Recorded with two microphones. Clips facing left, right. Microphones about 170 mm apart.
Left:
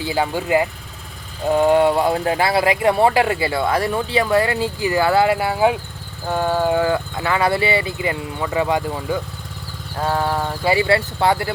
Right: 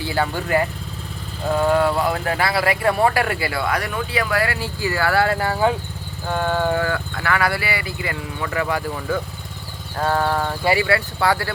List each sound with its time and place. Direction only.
0.0 s speech: 15° left (ahead or behind)